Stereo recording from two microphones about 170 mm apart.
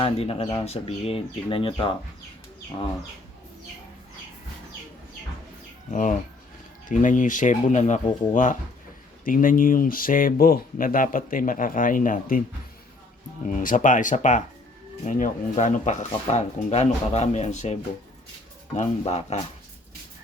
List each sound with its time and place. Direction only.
0.0 s speech: 35° left (ahead or behind)
5.9 s speech: 50° left (ahead or behind)
13.4 s speech: 50° left (ahead or behind)
18.8 s speech: 40° left (ahead or behind)